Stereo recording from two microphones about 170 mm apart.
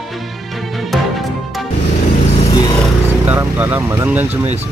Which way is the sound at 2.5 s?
25° left (ahead or behind).